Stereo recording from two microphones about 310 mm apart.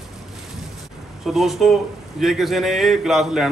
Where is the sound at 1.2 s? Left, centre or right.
Centre.